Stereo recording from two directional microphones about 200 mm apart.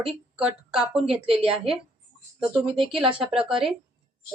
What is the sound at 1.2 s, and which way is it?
Speech, 30° right (ahead or behind).